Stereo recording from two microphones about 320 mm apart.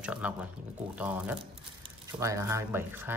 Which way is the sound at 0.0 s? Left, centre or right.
Centre.